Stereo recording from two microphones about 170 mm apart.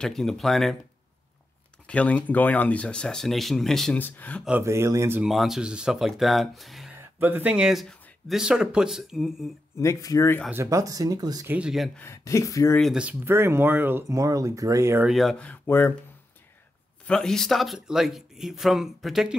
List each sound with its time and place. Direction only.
0.0 s speech: centre (ahead or behind)
1.9 s speech: 10° left (ahead or behind)
4.5 s speech: 15° right (ahead or behind)
5.2 s speech: centre (ahead or behind)
7.0 s speech: 10° right (ahead or behind)
9.8 s speech: 20° left (ahead or behind)
10.5 s speech: 15° right (ahead or behind)
11.5 s speech: 5° right (ahead or behind)
12.0 s speech: 15° left (ahead or behind)
12.9 s speech: 10° right (ahead or behind)
15.0 s speech: centre (ahead or behind)
17.0 s speech: 5° left (ahead or behind)